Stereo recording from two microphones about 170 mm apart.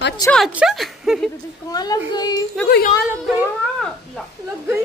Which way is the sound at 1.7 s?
20° left (ahead or behind).